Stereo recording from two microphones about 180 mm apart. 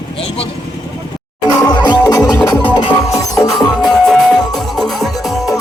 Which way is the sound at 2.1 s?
20° left (ahead or behind).